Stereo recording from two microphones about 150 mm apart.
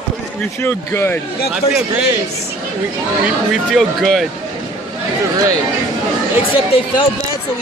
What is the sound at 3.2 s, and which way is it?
Speech, centre (ahead or behind).